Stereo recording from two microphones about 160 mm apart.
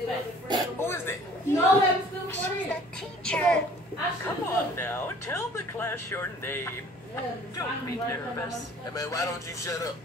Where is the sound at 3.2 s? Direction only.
5° left (ahead or behind).